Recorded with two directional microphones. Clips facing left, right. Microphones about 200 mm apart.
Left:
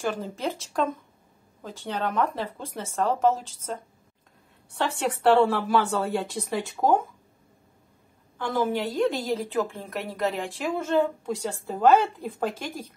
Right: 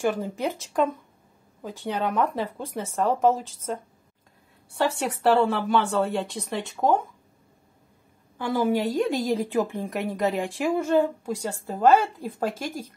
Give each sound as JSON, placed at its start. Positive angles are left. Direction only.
{"t": 0.0, "sound": "a woman's voice", "side_deg": -15}
{"t": 8.4, "sound": "a woman's voice", "side_deg": -10}